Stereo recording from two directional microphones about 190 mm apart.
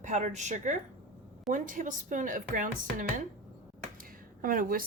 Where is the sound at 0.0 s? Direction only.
40° right (ahead or behind).